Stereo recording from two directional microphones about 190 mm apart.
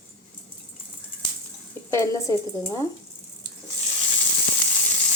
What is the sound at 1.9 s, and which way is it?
Speech, 15° left (ahead or behind).